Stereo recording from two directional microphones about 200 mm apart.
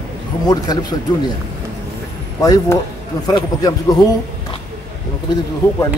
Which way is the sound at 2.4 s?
15° left (ahead or behind).